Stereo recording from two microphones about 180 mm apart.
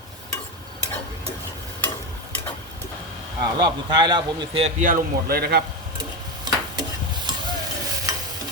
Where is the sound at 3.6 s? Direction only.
25° right (ahead or behind).